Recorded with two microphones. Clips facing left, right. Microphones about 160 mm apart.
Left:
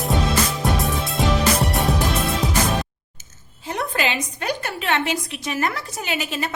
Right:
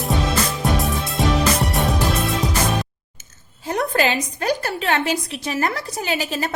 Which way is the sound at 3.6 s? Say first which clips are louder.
Right 4 dB; 40° right (ahead or behind).